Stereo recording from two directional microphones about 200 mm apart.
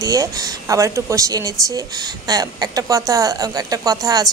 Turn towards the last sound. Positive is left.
turn(degrees=-20)  # may be behind; listen again after turning